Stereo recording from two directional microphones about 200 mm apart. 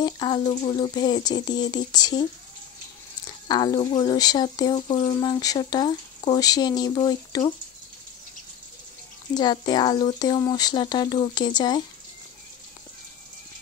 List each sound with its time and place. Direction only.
0.0 s speech: 20° left (ahead or behind)
3.3 s speech: 20° left (ahead or behind)
9.3 s speech: 20° left (ahead or behind)